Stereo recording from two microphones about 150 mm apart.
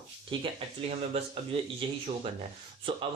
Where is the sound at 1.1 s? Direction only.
45° right (ahead or behind).